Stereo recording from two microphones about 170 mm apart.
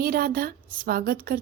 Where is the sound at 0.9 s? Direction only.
60° right (ahead or behind).